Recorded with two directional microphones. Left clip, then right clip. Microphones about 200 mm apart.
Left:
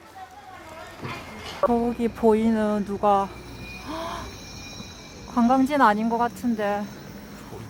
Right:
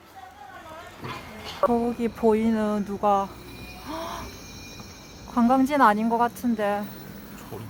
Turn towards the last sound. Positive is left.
turn(degrees=-5)  # may be behind; listen again after turning